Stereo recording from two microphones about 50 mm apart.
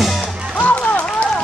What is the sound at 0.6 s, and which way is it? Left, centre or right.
Music, left.